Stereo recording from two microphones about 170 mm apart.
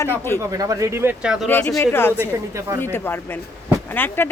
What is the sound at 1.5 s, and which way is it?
Speech, 10° left (ahead or behind).